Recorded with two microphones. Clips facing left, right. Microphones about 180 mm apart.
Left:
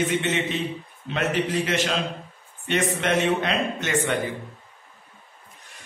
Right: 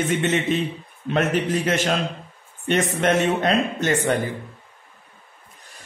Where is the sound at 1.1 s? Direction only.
50° right (ahead or behind).